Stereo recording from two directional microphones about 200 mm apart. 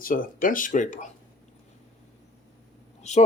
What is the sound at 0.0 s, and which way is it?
Speech, 45° left (ahead or behind).